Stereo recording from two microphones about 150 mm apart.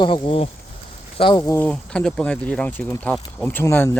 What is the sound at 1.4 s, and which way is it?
Speech, 10° left (ahead or behind).